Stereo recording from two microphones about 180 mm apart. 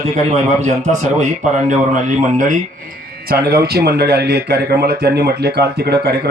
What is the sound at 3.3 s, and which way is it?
Speech, 60° right (ahead or behind).